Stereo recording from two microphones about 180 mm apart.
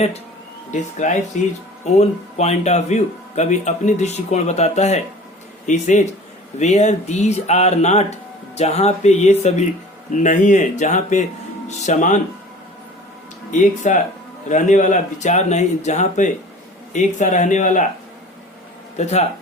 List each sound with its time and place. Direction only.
0.7 s speech: 40° left (ahead or behind)
13.5 s speech: 45° left (ahead or behind)